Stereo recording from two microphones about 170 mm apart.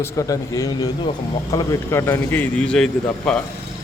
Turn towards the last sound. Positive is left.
turn(degrees=5)  # may be behind; listen again after turning